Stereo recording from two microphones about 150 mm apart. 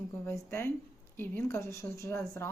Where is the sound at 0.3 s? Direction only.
15° left (ahead or behind).